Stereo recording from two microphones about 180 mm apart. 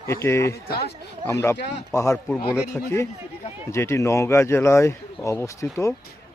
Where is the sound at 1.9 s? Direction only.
15° left (ahead or behind).